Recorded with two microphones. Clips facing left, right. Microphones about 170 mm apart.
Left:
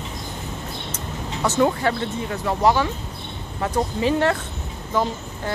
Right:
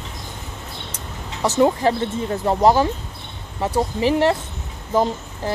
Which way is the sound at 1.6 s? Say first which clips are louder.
Right 4 dB; 25° right (ahead or behind).